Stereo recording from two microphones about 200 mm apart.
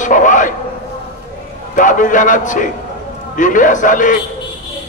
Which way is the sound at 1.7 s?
40° left (ahead or behind).